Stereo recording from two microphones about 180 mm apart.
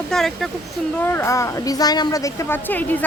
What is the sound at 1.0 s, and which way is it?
A woman's voice, 10° left (ahead or behind).